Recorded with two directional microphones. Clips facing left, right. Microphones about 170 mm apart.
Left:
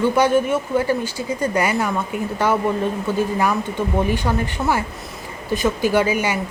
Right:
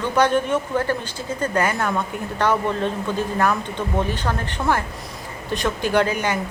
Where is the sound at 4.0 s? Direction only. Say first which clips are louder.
Left 4 dB; 10° left (ahead or behind).